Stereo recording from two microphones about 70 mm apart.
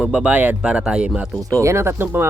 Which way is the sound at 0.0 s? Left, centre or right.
Centre.